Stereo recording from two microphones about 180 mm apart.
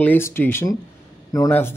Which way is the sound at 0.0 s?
10° left (ahead or behind).